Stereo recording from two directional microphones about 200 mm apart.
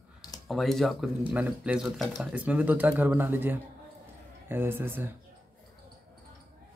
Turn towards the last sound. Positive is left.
turn(degrees=-10)  # may be behind; listen again after turning